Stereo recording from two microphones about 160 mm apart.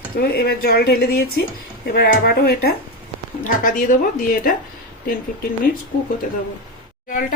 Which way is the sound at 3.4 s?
55° left (ahead or behind).